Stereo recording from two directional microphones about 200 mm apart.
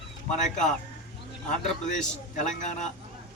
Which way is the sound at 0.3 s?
40° left (ahead or behind).